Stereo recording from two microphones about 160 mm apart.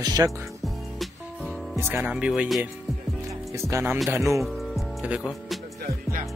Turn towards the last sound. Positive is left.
turn(degrees=-5)  # may be behind; listen again after turning